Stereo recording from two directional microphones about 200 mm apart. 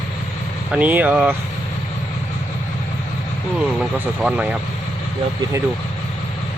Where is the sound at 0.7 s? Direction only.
10° right (ahead or behind).